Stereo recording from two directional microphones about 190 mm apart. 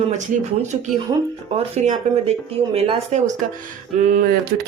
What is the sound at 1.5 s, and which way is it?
Speech, 35° right (ahead or behind).